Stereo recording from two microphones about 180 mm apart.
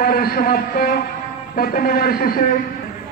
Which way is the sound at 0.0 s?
55° left (ahead or behind).